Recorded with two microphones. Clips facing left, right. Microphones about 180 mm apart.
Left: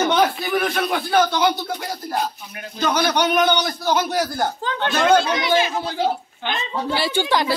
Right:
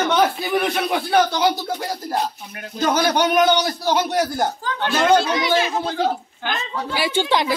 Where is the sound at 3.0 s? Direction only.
45° right (ahead or behind).